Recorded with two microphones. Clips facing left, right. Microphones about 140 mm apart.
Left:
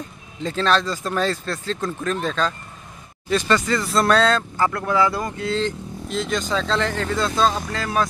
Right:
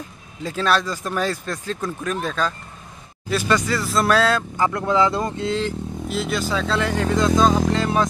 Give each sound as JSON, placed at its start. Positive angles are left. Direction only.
{"t": 0.4, "sound": "speech", "side_deg": -10}
{"t": 5.6, "sound": "speech", "side_deg": -5}
{"t": 7.7, "sound": "music", "side_deg": -20}